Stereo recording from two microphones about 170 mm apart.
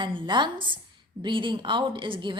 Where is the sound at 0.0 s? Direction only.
30° right (ahead or behind).